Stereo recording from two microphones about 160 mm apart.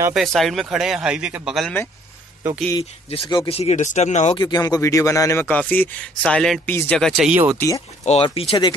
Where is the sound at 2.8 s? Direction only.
35° left (ahead or behind).